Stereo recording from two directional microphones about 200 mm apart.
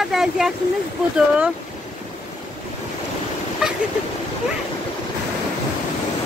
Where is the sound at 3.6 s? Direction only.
5° right (ahead or behind).